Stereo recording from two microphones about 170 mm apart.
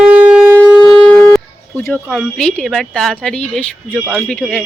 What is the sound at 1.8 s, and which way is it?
Speech, 5° left (ahead or behind).